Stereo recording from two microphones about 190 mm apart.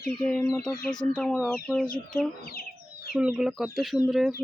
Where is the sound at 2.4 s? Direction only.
55° left (ahead or behind).